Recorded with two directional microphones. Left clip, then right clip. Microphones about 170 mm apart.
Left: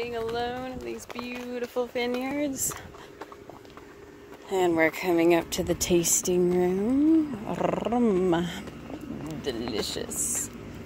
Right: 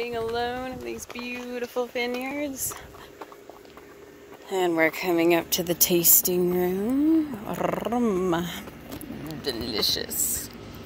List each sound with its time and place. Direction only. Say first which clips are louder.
0.0 s a sound: right 2 dB; 50° right (ahead or behind); by 0.9 s 30° right (ahead or behind)
1.1 s speech: right 1 dB; 10° right (ahead or behind)
2.0 s speech: even; 15° left (ahead or behind)
4.5 s speech: right 1 dB; 5° left (ahead or behind)